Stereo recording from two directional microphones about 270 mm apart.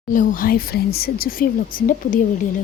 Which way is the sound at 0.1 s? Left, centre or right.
Left.